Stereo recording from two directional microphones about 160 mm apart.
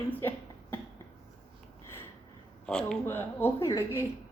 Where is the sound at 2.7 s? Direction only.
5° left (ahead or behind).